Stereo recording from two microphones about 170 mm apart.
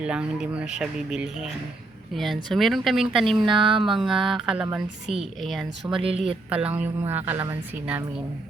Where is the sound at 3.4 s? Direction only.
30° right (ahead or behind).